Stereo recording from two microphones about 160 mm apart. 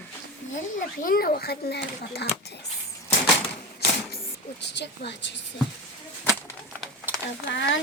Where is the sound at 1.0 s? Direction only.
65° left (ahead or behind); by 2.2 s 90° left.